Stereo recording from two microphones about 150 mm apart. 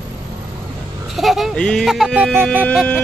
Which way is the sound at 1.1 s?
Centre (ahead or behind).